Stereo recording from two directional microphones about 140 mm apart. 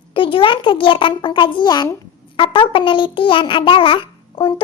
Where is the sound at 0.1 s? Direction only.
40° left (ahead or behind).